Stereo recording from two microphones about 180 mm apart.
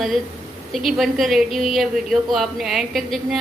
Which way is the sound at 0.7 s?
Centre (ahead or behind).